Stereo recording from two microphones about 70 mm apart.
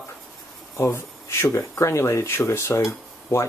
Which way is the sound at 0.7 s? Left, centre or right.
Left.